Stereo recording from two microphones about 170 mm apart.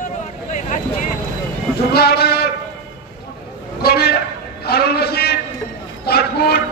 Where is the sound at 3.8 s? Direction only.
65° left (ahead or behind).